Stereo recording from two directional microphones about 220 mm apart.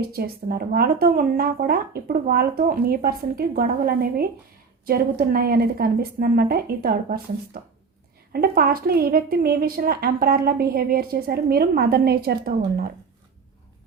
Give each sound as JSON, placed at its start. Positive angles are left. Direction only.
{"t": 0.1, "sound": "a woman's voice", "side_deg": -45}